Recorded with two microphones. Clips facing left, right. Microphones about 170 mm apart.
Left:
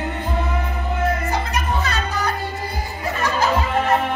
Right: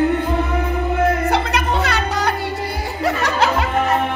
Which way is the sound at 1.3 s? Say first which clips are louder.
Right 4 dB; 75° right (ahead or behind).